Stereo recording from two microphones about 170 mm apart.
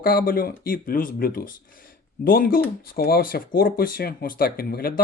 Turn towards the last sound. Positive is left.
turn(degrees=65)  # may be behind; listen again after turning